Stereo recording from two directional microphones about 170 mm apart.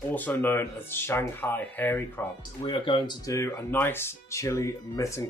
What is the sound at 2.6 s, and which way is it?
Speech, 30° left (ahead or behind).